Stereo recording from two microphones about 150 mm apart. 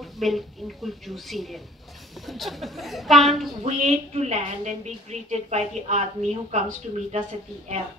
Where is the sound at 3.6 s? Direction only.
45° right (ahead or behind).